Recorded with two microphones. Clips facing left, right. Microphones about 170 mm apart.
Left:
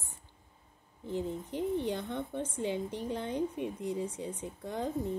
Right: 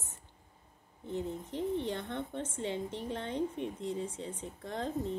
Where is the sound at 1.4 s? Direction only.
25° right (ahead or behind).